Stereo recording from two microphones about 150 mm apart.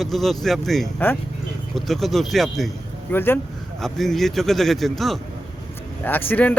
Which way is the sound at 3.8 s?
Centre (ahead or behind).